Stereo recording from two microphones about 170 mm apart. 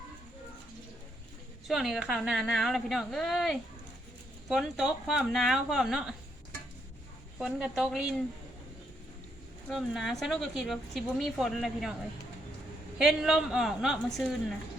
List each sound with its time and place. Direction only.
1.6 s speech: centre (ahead or behind)
7.3 s speech: 5° right (ahead or behind)
9.6 s speech: centre (ahead or behind)
13.0 s speech: 5° right (ahead or behind)